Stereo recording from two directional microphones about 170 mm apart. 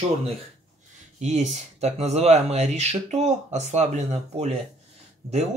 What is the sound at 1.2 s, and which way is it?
Speech, 45° right (ahead or behind).